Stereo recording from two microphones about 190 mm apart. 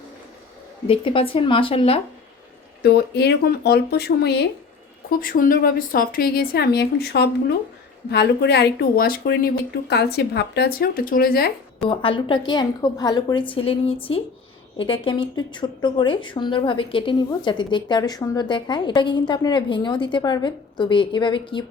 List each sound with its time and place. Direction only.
0.9 s speech: 30° left (ahead or behind)
2.8 s speech: 60° left (ahead or behind)
5.2 s a woman's voice: 50° left (ahead or behind)
11.8 s speech: 25° left (ahead or behind)